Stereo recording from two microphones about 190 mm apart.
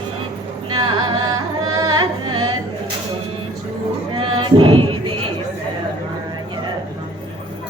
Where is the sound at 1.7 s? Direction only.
20° right (ahead or behind).